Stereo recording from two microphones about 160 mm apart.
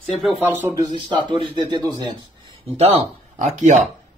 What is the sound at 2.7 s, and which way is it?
Speech, 40° right (ahead or behind).